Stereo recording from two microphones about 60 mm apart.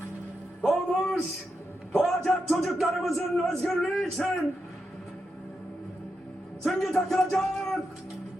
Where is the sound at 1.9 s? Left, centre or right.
Centre.